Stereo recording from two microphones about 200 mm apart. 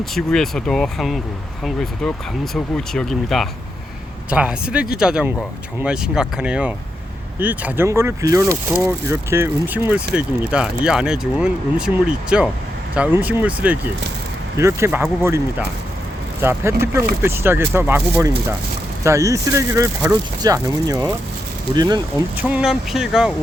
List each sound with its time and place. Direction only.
0.0 s speech: centre (ahead or behind)
16.4 s speech: 10° right (ahead or behind)
22.4 s speech: 5° right (ahead or behind)